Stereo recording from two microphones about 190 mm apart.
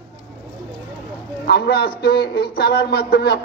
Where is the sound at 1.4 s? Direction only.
60° left (ahead or behind).